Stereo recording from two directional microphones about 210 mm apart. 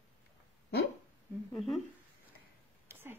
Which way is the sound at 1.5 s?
Centre (ahead or behind).